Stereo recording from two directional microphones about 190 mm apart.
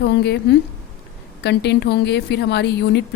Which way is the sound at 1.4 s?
65° left (ahead or behind).